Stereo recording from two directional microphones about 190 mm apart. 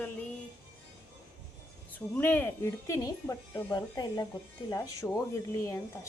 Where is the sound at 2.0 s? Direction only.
10° left (ahead or behind).